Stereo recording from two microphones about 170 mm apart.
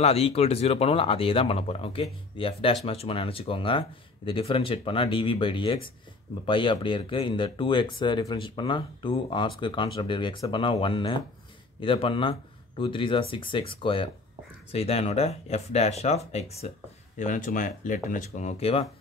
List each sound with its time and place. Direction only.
0.0 s speech: 35° left (ahead or behind)
17.2 s speech: 50° left (ahead or behind); by 18.9 s 35° left (ahead or behind)